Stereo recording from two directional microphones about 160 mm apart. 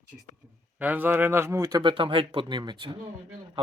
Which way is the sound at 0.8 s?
10° right (ahead or behind).